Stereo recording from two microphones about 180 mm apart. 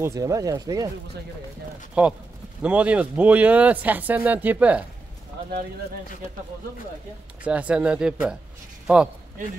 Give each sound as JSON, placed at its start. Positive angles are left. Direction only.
{"t": 0.0, "sound": "speech", "side_deg": -15}
{"t": 2.0, "sound": "speech", "side_deg": -5}
{"t": 7.4, "sound": "a man's voice", "side_deg": -5}